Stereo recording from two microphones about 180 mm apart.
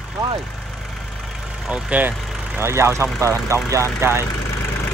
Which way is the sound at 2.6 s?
15° right (ahead or behind).